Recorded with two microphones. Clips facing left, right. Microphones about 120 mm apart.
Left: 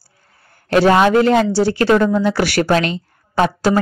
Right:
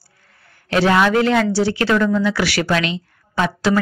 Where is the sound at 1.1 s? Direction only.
40° left (ahead or behind).